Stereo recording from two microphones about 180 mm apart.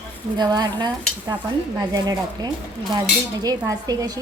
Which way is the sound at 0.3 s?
20° right (ahead or behind).